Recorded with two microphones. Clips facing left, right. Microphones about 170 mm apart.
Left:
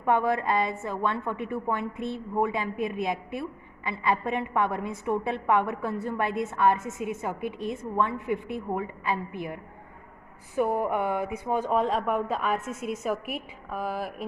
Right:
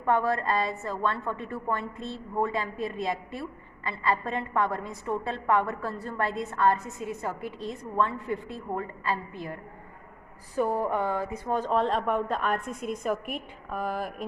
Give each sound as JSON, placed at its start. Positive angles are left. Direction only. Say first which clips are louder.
{"t": 0.0, "sound": "a woman's voice", "louder": "left 1 dB", "side_deg": 15}
{"t": 10.5, "sound": "a woman's voice", "louder": "left 1 dB", "side_deg": 15}